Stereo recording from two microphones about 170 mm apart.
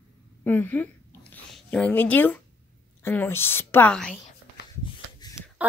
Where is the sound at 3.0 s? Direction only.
15° left (ahead or behind).